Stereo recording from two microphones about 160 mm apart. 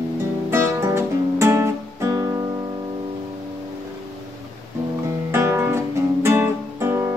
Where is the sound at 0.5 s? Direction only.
15° right (ahead or behind).